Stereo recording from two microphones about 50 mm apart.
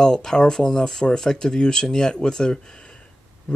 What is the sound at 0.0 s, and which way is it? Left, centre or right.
Speech, centre.